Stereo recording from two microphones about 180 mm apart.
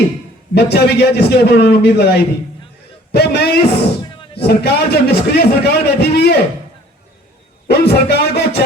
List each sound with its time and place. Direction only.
0.5 s a man's voice: 65° left (ahead or behind)
7.7 s a man's voice: 65° left (ahead or behind)